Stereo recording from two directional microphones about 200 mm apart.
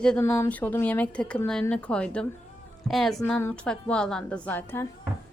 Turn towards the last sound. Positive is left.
turn(degrees=10)  # may be behind; listen again after turning